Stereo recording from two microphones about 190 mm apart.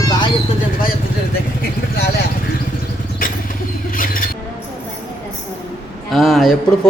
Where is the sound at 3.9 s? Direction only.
45° left (ahead or behind).